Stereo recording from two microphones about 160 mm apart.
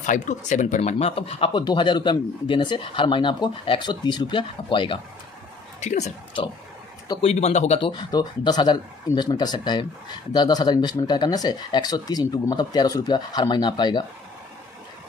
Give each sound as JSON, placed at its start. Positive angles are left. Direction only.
{"t": 0.0, "sound": "speech", "side_deg": 50}
{"t": 5.8, "sound": "speech", "side_deg": 45}
{"t": 7.9, "sound": "speech", "side_deg": 25}